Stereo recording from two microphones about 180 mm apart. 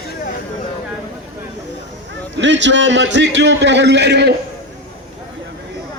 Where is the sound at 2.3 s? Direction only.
90° right; by 4.3 s 70° right (ahead or behind).